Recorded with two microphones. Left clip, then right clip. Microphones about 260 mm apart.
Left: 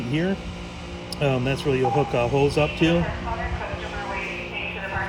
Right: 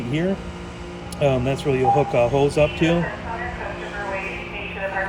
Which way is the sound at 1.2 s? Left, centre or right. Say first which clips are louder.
Right 3 dB; centre.